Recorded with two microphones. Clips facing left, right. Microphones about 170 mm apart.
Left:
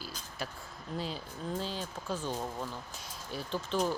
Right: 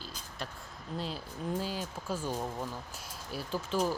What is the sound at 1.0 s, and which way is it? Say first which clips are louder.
Speech: even; centre (ahead or behind).